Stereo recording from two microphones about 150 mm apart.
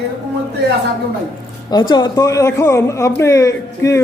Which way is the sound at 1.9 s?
25° left (ahead or behind).